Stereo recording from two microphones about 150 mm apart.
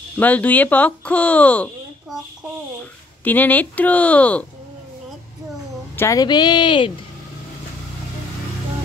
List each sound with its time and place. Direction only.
0.2 s speech: 10° left (ahead or behind)
3.3 s speech: 10° left (ahead or behind)
5.9 s a woman's voice: 20° left (ahead or behind)